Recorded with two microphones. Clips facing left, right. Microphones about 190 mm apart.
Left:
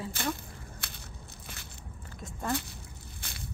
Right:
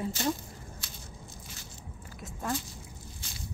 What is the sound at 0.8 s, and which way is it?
Crushing, 60° left (ahead or behind).